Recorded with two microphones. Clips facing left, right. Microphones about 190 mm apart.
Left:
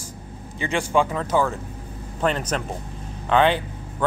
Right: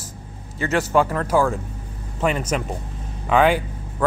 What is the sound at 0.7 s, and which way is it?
Speech, 5° right (ahead or behind).